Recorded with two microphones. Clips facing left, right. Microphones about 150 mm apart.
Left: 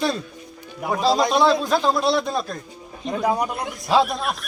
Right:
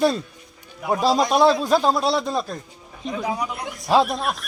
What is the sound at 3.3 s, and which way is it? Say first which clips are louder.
Speech: left 6 dB; 50° left (ahead or behind).